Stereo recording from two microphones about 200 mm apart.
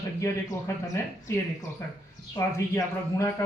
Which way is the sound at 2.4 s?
15° left (ahead or behind).